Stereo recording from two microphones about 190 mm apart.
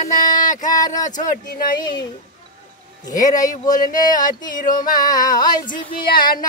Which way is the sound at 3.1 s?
40° left (ahead or behind).